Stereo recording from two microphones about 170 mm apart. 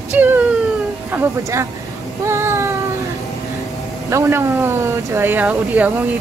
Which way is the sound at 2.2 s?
15° right (ahead or behind).